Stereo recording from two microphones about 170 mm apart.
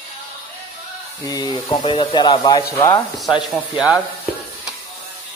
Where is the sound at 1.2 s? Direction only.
20° left (ahead or behind).